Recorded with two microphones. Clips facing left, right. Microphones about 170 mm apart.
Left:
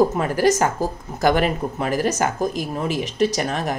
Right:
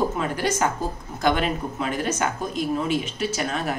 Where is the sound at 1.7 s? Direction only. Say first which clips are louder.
Left 4 dB; 40° left (ahead or behind).